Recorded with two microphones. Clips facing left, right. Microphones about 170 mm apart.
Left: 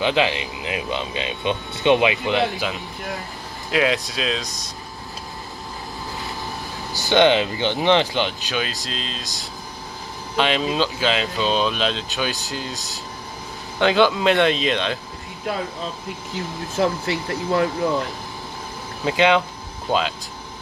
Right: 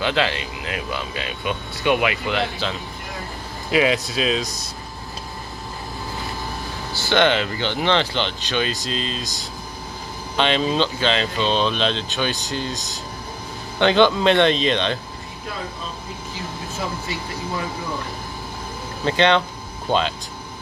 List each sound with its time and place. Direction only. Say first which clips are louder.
0.0 s speech: left 2 dB; 15° left (ahead or behind)
3.7 s speech: right 2 dB; centre (ahead or behind)
6.9 s speech: left 3 dB; 15° left (ahead or behind)
16.7 s speech: left 9 dB; 70° left (ahead or behind)
19.0 s speech: even; 5° left (ahead or behind)